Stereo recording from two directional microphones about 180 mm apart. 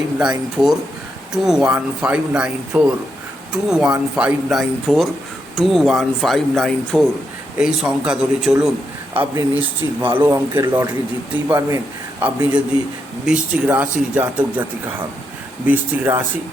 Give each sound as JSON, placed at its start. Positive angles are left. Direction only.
{"t": 0.2, "sound": "speech", "side_deg": -5}
{"t": 15.6, "sound": "speech", "side_deg": -10}